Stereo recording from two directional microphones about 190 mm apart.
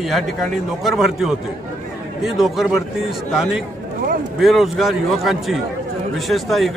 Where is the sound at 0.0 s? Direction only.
Centre (ahead or behind).